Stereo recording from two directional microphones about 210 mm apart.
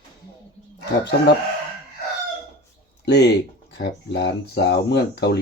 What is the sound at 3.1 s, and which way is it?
Speech, 55° left (ahead or behind).